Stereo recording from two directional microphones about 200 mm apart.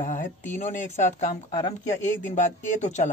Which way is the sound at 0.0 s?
40° left (ahead or behind).